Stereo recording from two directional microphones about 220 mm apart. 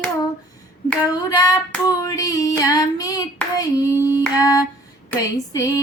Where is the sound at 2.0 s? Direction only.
15° left (ahead or behind).